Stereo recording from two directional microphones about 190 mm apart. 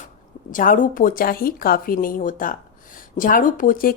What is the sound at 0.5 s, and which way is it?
Speech, 45° left (ahead or behind).